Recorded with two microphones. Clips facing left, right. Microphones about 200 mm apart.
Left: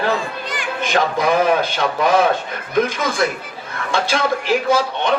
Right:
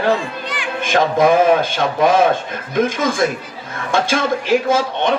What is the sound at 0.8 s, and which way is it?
Speech, 50° right (ahead or behind).